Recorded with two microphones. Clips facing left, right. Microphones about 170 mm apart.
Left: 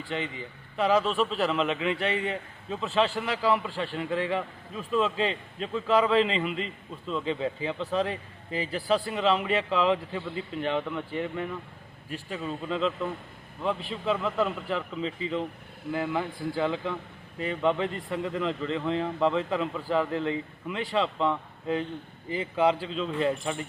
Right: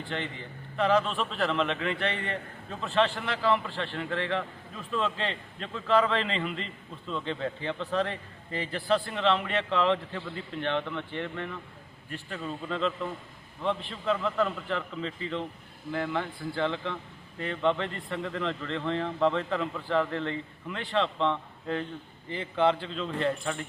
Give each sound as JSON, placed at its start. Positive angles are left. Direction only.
{"t": 0.1, "sound": "a man's voice", "side_deg": 5}